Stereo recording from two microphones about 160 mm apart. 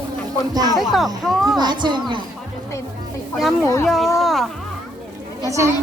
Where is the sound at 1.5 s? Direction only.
25° right (ahead or behind).